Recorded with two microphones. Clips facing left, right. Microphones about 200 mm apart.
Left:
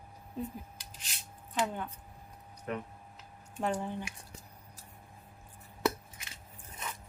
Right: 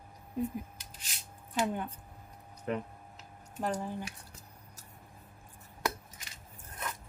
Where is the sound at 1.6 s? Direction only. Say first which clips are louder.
Right 2 dB; 15° right (ahead or behind).